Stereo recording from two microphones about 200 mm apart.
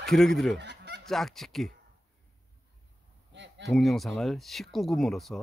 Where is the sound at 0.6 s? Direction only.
55° right (ahead or behind).